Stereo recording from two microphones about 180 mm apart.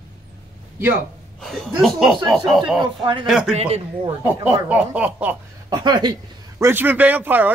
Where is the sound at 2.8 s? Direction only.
25° right (ahead or behind).